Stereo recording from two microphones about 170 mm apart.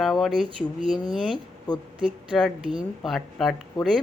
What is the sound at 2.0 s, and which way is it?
A woman's voice, centre (ahead or behind).